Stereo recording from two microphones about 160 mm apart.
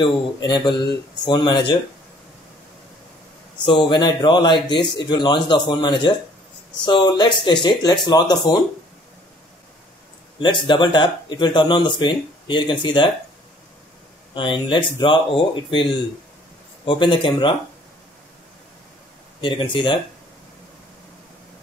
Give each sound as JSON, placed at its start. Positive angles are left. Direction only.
{"t": 0.0, "sound": "speech", "side_deg": 30}
{"t": 3.6, "sound": "speech", "side_deg": 30}
{"t": 10.4, "sound": "speech", "side_deg": 30}
{"t": 14.3, "sound": "speech", "side_deg": 30}
{"t": 19.4, "sound": "speech", "side_deg": 30}